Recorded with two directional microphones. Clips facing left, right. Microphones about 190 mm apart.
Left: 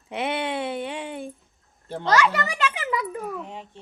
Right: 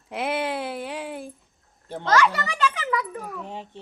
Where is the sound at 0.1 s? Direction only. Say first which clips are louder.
Even; centre (ahead or behind).